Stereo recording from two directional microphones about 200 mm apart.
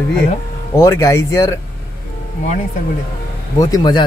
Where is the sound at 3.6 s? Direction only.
20° left (ahead or behind).